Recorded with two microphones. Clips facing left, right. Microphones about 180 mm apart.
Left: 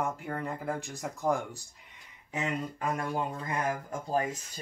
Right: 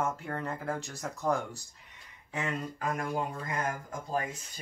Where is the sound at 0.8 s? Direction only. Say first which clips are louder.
Left 2 dB; 15° left (ahead or behind).